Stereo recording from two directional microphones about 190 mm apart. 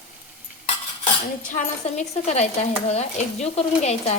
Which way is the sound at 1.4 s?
40° left (ahead or behind).